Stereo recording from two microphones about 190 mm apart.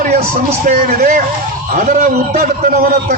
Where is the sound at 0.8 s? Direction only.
45° right (ahead or behind).